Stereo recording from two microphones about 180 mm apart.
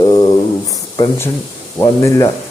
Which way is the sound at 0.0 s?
20° left (ahead or behind).